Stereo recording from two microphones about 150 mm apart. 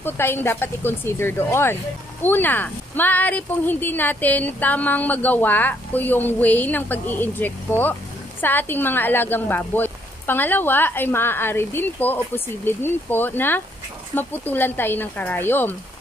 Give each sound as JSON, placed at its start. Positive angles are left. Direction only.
{"t": 0.0, "sound": "speech", "side_deg": 15}